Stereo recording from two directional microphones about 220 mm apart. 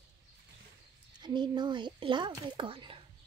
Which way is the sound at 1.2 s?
20° right (ahead or behind).